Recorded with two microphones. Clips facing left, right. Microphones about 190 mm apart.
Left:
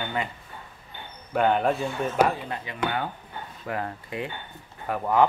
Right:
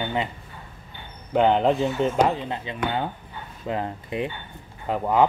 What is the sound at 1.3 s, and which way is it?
Speech, 20° right (ahead or behind).